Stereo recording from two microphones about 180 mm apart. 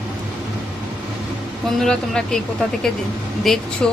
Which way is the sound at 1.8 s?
5° left (ahead or behind).